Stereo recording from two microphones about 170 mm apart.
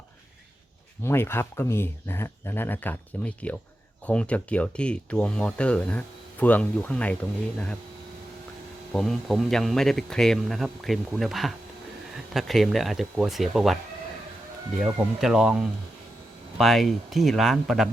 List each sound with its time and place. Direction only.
1.0 s speech: 15° left (ahead or behind)
8.9 s speech: centre (ahead or behind)
14.8 s speech: 5° right (ahead or behind)